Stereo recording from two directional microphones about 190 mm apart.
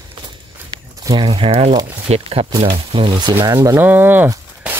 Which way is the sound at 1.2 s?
30° right (ahead or behind).